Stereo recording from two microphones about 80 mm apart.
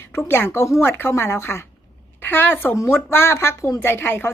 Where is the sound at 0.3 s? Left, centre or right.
Left.